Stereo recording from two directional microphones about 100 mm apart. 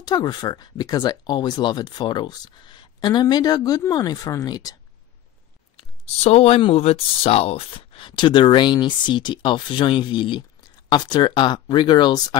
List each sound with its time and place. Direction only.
0.0 s speech: 40° left (ahead or behind)
5.8 s speech: 90° left; by 12.4 s 45° left (ahead or behind)